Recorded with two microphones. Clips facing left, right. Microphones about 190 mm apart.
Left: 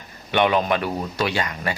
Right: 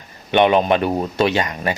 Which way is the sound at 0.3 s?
25° right (ahead or behind).